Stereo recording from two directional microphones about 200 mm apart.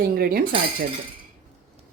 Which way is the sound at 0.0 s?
45° right (ahead or behind).